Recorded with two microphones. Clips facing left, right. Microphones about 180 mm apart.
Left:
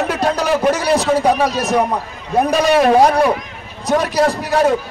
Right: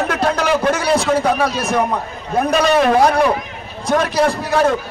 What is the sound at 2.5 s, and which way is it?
Speech, 10° left (ahead or behind).